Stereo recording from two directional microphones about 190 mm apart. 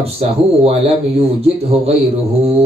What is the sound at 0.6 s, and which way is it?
Speech, 30° right (ahead or behind).